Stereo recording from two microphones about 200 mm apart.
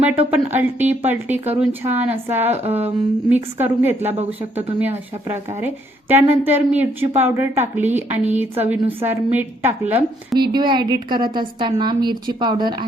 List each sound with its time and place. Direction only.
0.3 s a woman's voice: 10° right (ahead or behind)
2.6 s a sound: 30° right (ahead or behind)
3.2 s a woman's voice: 10° right (ahead or behind)
10.3 s a woman's voice: 20° right (ahead or behind)